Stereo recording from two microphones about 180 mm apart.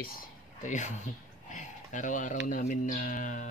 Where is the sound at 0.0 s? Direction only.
55° left (ahead or behind).